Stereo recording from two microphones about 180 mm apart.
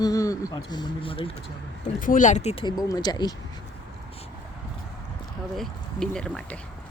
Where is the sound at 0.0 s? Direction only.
20° left (ahead or behind).